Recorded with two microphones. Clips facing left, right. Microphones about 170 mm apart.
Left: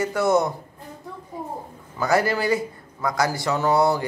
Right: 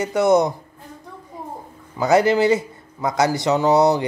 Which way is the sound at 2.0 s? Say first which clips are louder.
Right 6 dB; 20° right (ahead or behind).